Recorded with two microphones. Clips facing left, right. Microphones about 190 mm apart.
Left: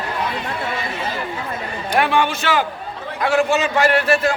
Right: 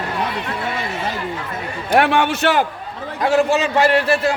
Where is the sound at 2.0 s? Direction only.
65° right (ahead or behind).